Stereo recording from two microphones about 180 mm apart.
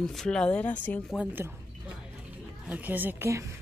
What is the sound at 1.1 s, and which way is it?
Speech, 10° right (ahead or behind).